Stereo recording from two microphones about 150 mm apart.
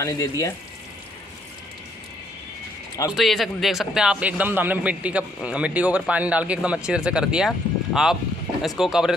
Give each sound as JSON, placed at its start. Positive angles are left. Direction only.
{"t": 0.0, "sound": "speech", "side_deg": 20}
{"t": 3.1, "sound": "a man's voice", "side_deg": 0}